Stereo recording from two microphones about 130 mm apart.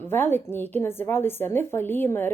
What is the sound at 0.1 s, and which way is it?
Speech, 15° left (ahead or behind).